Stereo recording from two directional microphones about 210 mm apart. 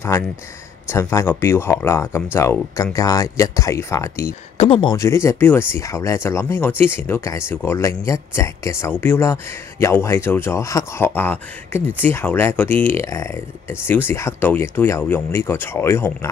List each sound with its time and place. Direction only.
0.8 s speech: 10° left (ahead or behind)
4.6 s speech: 25° left (ahead or behind)
4.9 s speech: 15° left (ahead or behind)